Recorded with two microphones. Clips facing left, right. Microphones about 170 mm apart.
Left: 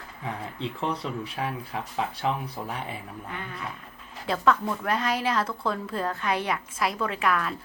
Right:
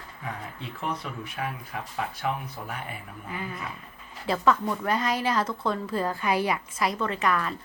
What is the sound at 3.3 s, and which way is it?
A woman's voice, 5° right (ahead or behind).